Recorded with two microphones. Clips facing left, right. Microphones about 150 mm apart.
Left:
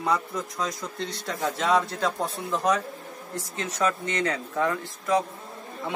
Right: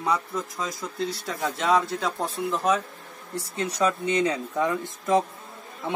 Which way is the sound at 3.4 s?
10° right (ahead or behind).